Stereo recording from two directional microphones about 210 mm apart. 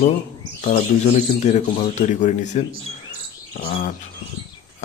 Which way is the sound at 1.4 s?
35° left (ahead or behind).